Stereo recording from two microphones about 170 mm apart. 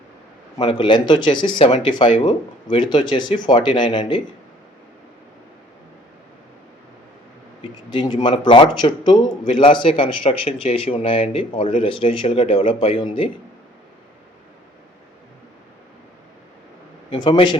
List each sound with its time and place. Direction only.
0.6 s speech: 30° left (ahead or behind)
7.9 s a man's voice: 30° left (ahead or behind)
17.1 s speech: 30° left (ahead or behind)